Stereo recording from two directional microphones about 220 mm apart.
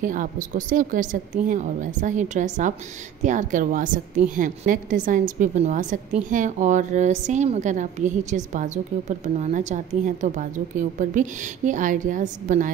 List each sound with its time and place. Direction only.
0.0 s a woman's voice: 35° right (ahead or behind)